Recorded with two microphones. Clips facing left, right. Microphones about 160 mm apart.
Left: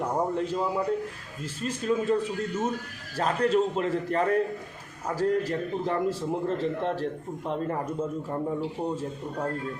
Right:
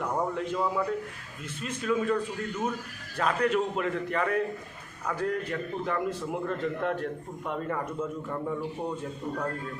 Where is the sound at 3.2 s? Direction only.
35° left (ahead or behind).